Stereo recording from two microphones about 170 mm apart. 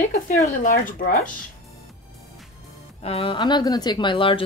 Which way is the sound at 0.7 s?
55° left (ahead or behind).